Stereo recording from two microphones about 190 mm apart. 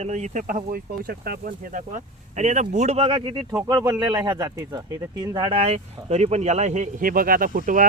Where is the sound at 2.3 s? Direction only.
40° right (ahead or behind).